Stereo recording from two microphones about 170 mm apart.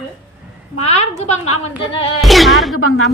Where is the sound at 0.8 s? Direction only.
40° left (ahead or behind).